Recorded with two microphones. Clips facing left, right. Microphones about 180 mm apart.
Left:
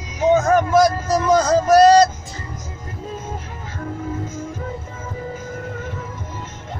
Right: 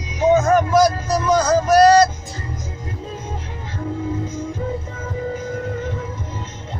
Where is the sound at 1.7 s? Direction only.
20° left (ahead or behind).